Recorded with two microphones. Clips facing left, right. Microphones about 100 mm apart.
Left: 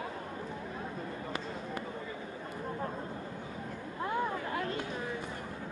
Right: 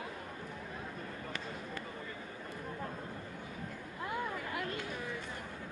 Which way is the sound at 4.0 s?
30° left (ahead or behind).